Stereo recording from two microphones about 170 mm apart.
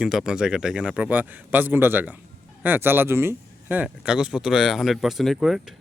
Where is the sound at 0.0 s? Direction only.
5° right (ahead or behind).